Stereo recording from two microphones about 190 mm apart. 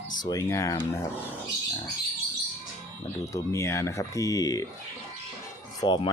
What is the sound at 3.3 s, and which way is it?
Speech, 15° left (ahead or behind).